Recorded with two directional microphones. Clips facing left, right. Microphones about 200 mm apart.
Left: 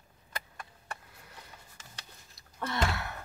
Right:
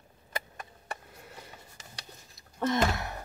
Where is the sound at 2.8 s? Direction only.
20° right (ahead or behind).